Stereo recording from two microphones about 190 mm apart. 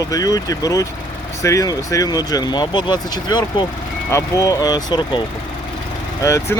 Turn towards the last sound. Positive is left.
turn(degrees=15)  # may be behind; listen again after turning